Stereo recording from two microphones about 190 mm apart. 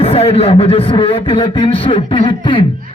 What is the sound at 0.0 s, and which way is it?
A man's voice, 30° left (ahead or behind).